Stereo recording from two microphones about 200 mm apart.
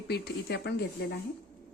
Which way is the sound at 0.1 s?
55° left (ahead or behind).